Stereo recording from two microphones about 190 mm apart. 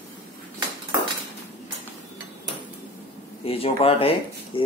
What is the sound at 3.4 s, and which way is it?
Speech, 30° left (ahead or behind).